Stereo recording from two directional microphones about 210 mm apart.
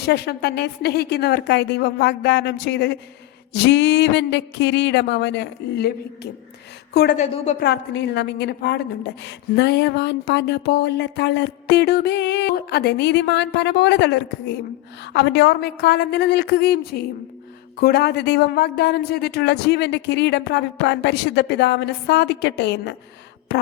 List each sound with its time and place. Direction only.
0.0 s a woman's voice: 50° left (ahead or behind)
3.5 s a sound: 55° left (ahead or behind)
6.9 s a woman's voice: 50° left (ahead or behind)
7.2 s a woman's voice: 35° left (ahead or behind)
7.6 s a woman's voice: 55° left (ahead or behind)